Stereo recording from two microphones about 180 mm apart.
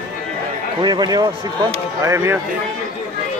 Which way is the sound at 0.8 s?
25° right (ahead or behind).